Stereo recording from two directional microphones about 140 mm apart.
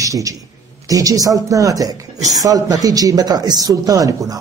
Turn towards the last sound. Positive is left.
turn(degrees=-25)  # may be behind; listen again after turning